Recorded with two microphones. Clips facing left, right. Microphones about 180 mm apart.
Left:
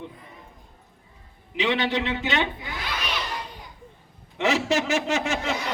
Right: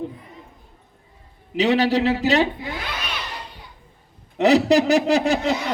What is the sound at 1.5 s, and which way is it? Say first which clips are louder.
Speech: right 6 dB; 40° right (ahead or behind).